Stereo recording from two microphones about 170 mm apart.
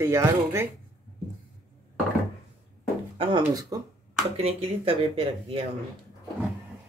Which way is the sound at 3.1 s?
30° right (ahead or behind).